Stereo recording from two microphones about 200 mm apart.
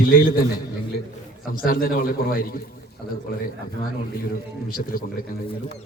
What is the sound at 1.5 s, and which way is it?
A man's voice, 45° left (ahead or behind).